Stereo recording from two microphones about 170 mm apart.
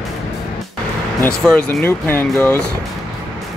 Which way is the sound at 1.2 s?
5° left (ahead or behind).